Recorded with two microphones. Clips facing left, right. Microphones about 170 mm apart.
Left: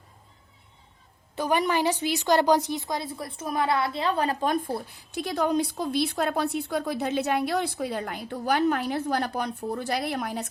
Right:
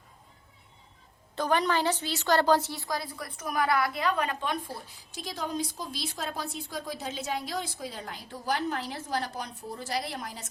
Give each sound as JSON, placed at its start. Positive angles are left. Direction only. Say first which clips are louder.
{"t": 1.4, "sound": "a woman's voice", "louder": "left 2 dB", "side_deg": 10}